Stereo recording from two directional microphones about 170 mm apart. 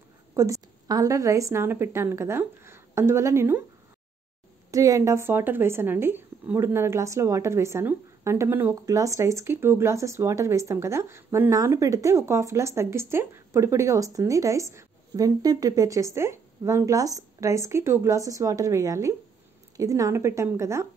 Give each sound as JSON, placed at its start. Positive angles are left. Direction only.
{"t": 0.3, "sound": "a woman's voice", "side_deg": -20}
{"t": 4.6, "sound": "speech", "side_deg": -20}